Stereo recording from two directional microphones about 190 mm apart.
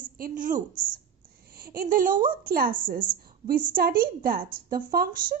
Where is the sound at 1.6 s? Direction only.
50° right (ahead or behind).